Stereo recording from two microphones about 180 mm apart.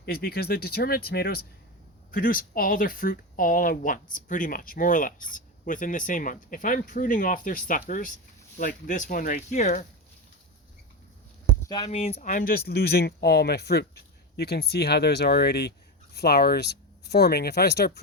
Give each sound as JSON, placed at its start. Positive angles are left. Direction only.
{"t": 0.0, "sound": "a man's voice", "side_deg": 60}
{"t": 11.9, "sound": "speech", "side_deg": 35}
{"t": 12.3, "sound": "a man's voice", "side_deg": 50}